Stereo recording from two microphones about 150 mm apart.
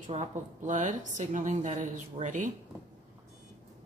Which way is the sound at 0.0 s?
55° right (ahead or behind).